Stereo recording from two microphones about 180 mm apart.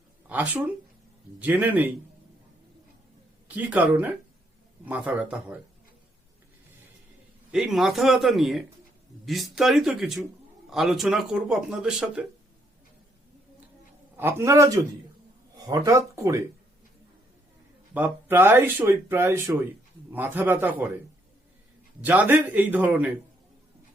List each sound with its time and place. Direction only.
0.3 s speech: 10° right (ahead or behind)
3.5 s speech: 10° right (ahead or behind)
7.5 s speech: centre (ahead or behind)
14.2 s speech: 15° right (ahead or behind)
17.9 s speech: 10° right (ahead or behind)
22.0 s speech: 10° right (ahead or behind)